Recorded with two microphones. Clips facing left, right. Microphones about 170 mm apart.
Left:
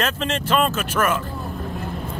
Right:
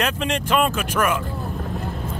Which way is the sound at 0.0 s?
15° right (ahead or behind).